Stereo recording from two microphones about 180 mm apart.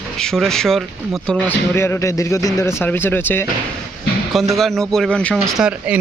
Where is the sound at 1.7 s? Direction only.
15° left (ahead or behind).